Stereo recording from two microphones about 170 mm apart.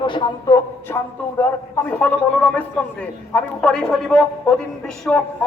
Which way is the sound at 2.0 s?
5° left (ahead or behind).